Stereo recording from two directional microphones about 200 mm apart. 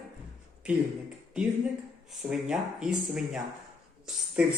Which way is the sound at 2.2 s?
5° right (ahead or behind).